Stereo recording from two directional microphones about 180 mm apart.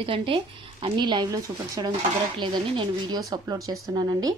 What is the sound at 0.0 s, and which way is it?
Speech, 30° right (ahead or behind).